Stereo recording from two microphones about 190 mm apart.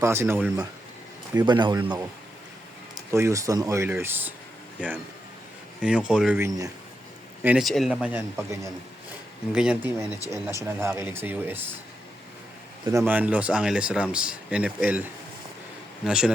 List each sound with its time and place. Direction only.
0.0 s speech: 15° right (ahead or behind)
1.3 s speech: 20° right (ahead or behind)
3.1 s speech: 15° right (ahead or behind)
5.8 s speech: 5° right (ahead or behind)
7.4 s speech: centre (ahead or behind)
10.1 s speech: 15° left (ahead or behind)
10.3 s speech: 15° right (ahead or behind)
13.0 s speech: 10° right (ahead or behind)